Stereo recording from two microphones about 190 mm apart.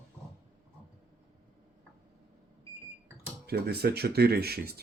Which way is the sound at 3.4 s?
55° right (ahead or behind).